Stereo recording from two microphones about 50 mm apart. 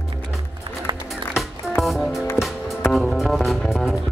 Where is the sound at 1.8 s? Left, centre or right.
Centre.